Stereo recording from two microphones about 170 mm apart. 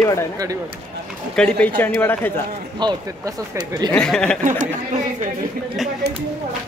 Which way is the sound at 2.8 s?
25° right (ahead or behind).